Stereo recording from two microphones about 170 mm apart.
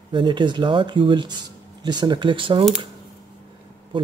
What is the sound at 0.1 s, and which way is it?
Speech, 30° right (ahead or behind).